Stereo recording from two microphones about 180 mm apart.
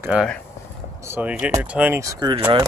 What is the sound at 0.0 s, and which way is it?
Speech, 5° right (ahead or behind).